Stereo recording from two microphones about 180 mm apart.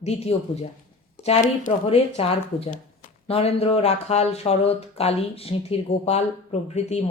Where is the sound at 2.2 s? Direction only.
35° left (ahead or behind).